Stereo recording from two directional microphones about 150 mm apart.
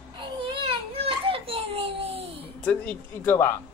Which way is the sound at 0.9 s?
40° right (ahead or behind).